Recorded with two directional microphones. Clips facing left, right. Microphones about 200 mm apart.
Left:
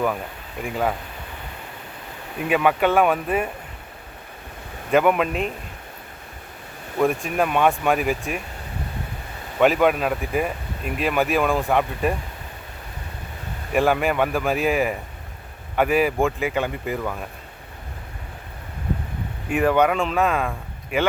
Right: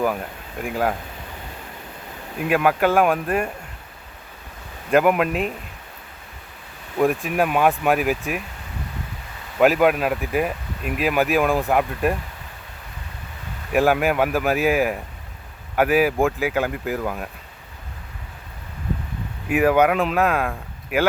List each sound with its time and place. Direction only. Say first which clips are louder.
0.6 s speech: right 1 dB; centre (ahead or behind)
2.4 s speech: right 1 dB; centre (ahead or behind)
4.9 s speech: right 1 dB; 5° right (ahead or behind)
7.0 s speech: right 1 dB; centre (ahead or behind)
9.6 s speech: right 1 dB; 5° right (ahead or behind)
13.7 s speech: right 1 dB; 5° right (ahead or behind)
19.5 s speech: right 2 dB; 5° right (ahead or behind)